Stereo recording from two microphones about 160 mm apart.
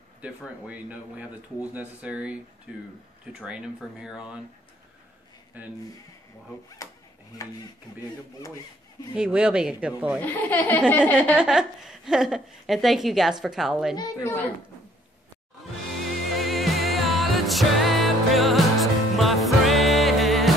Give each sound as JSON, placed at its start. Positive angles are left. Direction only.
{"t": 0.2, "sound": "a woman's voice", "side_deg": -10}
{"t": 5.5, "sound": "speech", "side_deg": -10}
{"t": 6.8, "sound": "a sound", "side_deg": 20}
{"t": 9.1, "sound": "speech", "side_deg": -5}
{"t": 10.2, "sound": "speech", "side_deg": 10}
{"t": 11.3, "sound": "a woman's voice", "side_deg": -5}
{"t": 13.9, "sound": "a woman's voice", "side_deg": 20}
{"t": 16.0, "sound": "music", "side_deg": 0}